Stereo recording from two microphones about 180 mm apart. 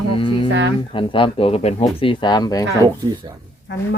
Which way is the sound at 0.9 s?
30° left (ahead or behind).